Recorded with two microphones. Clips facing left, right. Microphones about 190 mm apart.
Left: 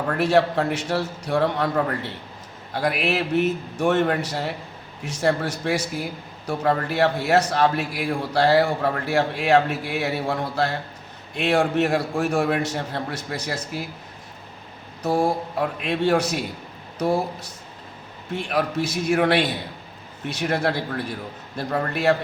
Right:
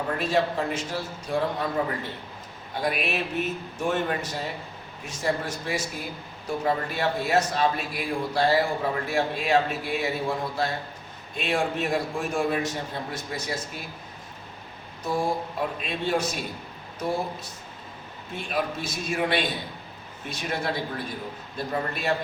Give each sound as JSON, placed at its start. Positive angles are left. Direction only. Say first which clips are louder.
{"t": 0.2, "sound": "a man's voice", "louder": "left 7 dB", "side_deg": 75}
{"t": 15.0, "sound": "a man's voice", "louder": "left 5 dB", "side_deg": 70}